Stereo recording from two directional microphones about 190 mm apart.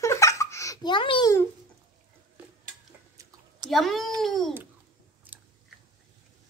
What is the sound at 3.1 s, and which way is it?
Chewing, 15° right (ahead or behind).